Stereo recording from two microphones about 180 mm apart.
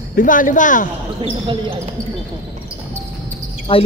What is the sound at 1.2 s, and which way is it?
Speech, 30° right (ahead or behind).